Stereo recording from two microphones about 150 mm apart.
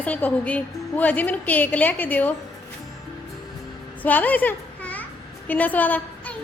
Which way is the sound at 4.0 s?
10° left (ahead or behind).